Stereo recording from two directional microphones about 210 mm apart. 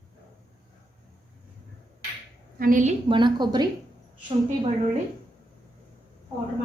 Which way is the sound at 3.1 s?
20° right (ahead or behind).